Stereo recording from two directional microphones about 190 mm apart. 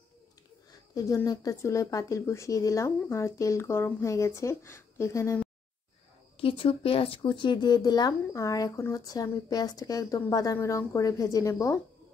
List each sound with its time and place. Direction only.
0.9 s speech: 20° left (ahead or behind)
6.3 s speech: 30° left (ahead or behind)